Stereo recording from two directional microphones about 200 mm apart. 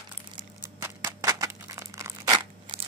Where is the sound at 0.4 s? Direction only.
15° right (ahead or behind).